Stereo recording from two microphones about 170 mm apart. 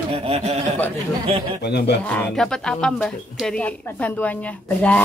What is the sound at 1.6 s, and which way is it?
Speech, 75° left (ahead or behind).